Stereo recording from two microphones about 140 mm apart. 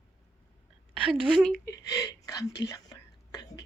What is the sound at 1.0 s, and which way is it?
Speech, 10° right (ahead or behind).